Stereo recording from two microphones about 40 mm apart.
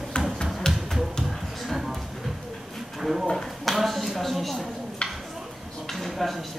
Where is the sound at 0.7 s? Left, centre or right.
Centre.